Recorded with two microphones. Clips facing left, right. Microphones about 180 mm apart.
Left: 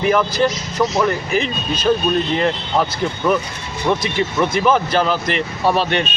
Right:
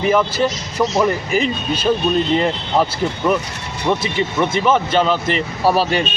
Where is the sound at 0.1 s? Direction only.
5° right (ahead or behind).